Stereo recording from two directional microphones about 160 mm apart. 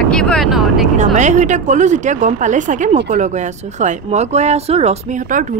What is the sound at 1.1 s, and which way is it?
Speech, 50° right (ahead or behind).